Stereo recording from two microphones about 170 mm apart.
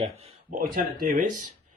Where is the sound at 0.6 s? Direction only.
55° right (ahead or behind).